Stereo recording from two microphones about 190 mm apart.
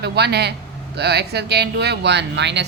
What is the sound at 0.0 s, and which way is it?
Speech, 60° right (ahead or behind).